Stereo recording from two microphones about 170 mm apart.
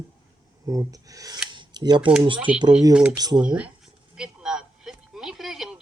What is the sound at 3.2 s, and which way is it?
Speech, 25° right (ahead or behind).